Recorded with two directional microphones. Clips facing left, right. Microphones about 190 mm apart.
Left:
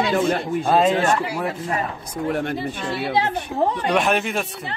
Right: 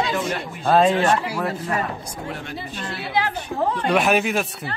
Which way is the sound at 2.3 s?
55° left (ahead or behind).